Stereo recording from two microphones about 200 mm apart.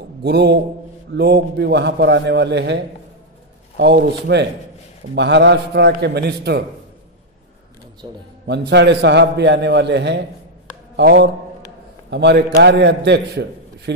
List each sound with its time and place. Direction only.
0.2 s a man's voice: 55° right (ahead or behind)
8.0 s speech: 20° right (ahead or behind)
8.5 s a man's voice: 60° right (ahead or behind)